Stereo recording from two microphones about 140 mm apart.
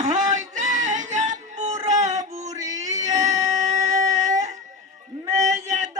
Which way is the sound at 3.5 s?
55° right (ahead or behind).